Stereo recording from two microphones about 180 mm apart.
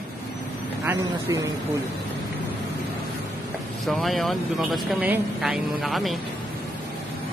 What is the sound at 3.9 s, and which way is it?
Speech, centre (ahead or behind).